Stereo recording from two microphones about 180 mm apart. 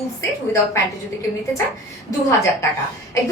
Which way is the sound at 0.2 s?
15° left (ahead or behind).